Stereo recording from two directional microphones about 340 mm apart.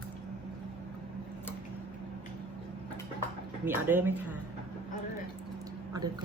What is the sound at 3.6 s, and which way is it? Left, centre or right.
Speech, centre.